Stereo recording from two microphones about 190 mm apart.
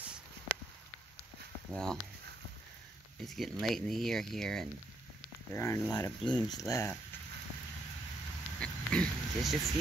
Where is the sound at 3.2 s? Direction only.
Centre (ahead or behind).